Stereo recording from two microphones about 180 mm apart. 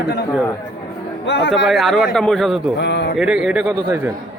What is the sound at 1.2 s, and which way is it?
Speech, 85° left.